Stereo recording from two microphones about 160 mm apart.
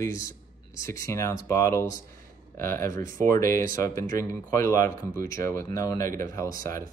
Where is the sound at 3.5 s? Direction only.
60° right (ahead or behind).